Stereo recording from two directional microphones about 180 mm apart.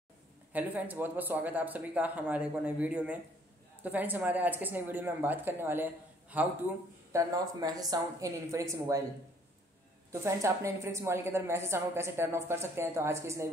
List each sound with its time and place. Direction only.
0.5 s a woman's voice: 10° right (ahead or behind)
7.1 s a woman's voice: 20° right (ahead or behind)
10.2 s a woman's voice: 15° right (ahead or behind)